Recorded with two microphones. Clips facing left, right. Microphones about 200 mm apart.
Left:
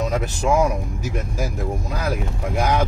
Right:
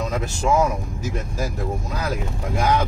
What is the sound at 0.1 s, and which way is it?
Speech, 15° left (ahead or behind).